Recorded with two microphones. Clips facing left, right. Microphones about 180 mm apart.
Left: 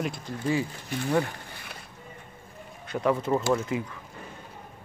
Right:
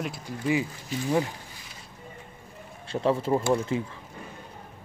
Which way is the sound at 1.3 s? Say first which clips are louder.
Left 2 dB; 65° left (ahead or behind).